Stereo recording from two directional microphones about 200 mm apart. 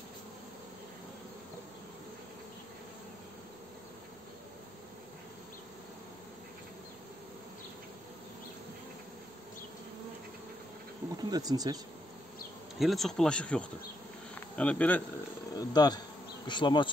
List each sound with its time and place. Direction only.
11.2 s speech: 20° right (ahead or behind)
12.7 s speech: centre (ahead or behind)
15.5 s speech: 20° left (ahead or behind)
16.4 s bee: 25° left (ahead or behind)